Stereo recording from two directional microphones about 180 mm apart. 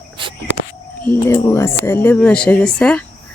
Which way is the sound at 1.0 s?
10° left (ahead or behind).